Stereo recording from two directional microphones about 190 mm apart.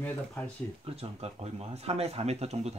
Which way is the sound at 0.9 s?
30° right (ahead or behind).